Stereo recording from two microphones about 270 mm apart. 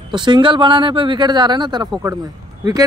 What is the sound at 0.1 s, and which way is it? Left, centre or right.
Speech, centre.